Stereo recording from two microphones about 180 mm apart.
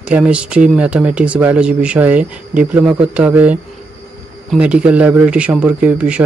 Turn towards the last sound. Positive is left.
turn(degrees=-5)  # may be behind; listen again after turning